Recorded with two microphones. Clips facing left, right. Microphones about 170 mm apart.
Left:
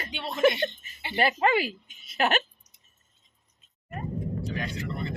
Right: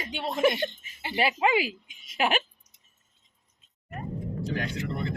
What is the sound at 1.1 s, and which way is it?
Speech, 10° right (ahead or behind).